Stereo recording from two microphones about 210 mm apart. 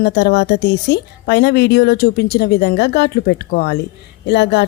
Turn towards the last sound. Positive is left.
turn(degrees=55)  # may be behind; listen again after turning